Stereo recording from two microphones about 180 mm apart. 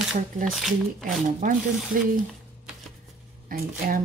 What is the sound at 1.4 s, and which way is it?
Speech, 50° right (ahead or behind).